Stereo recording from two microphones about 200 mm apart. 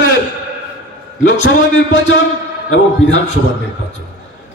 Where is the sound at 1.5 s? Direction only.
70° left (ahead or behind).